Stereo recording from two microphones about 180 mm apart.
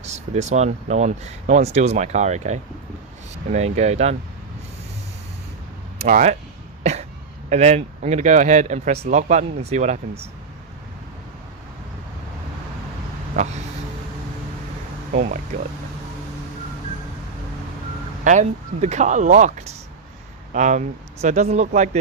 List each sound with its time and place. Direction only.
0.0 s speech: 40° right (ahead or behind)
6.0 s speech: 45° right (ahead or behind)
7.5 s speech: 40° right (ahead or behind)
13.4 s speech: 40° right (ahead or behind)
18.3 s speech: 40° right (ahead or behind)